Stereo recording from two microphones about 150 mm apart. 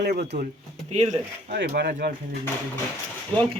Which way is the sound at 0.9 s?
50° right (ahead or behind).